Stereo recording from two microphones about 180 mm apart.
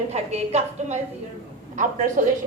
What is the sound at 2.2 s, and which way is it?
Speech, 50° right (ahead or behind).